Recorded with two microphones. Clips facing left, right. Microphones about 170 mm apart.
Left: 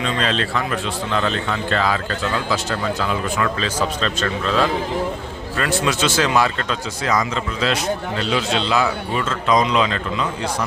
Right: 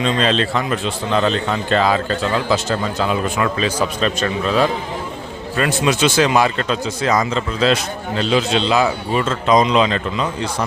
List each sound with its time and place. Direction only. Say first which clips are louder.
0.0 s speech: right 4 dB; 25° right (ahead or behind)